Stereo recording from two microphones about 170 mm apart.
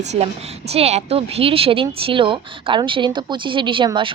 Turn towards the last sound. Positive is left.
turn(degrees=-30)  # may be behind; listen again after turning